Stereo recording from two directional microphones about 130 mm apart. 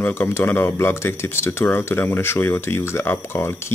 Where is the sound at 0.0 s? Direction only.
15° left (ahead or behind).